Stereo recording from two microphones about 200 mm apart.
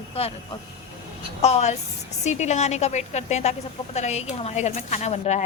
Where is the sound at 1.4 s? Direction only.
35° left (ahead or behind).